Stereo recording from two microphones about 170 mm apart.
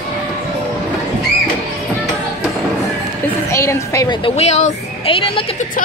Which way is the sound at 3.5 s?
15° left (ahead or behind).